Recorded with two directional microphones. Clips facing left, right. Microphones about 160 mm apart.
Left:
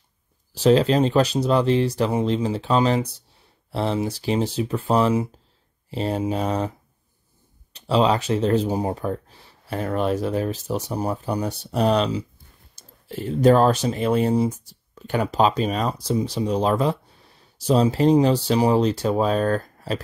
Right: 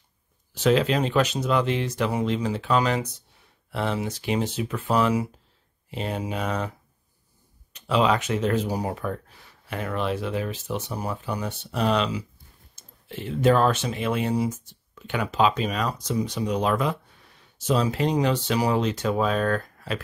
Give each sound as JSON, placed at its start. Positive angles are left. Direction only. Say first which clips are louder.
{"t": 0.6, "sound": "speech", "louder": "left 4 dB", "side_deg": 35}
{"t": 7.7, "sound": "speech", "louder": "left 3 dB", "side_deg": 30}